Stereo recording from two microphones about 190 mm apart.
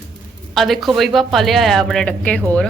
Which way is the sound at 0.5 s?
Centre (ahead or behind).